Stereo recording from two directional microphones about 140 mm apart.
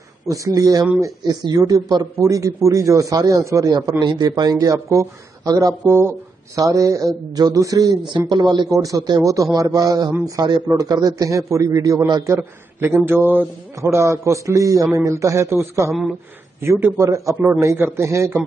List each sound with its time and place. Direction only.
0.3 s a man's voice: 25° right (ahead or behind)